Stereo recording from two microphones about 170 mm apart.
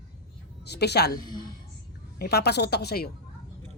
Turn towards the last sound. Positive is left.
turn(degrees=70)  # may be behind; listen again after turning